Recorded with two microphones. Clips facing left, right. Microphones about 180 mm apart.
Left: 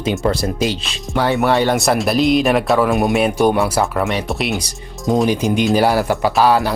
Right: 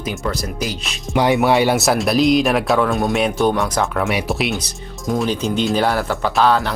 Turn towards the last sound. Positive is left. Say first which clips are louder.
# left 2 dB
turn(degrees=10)  # may be behind; listen again after turning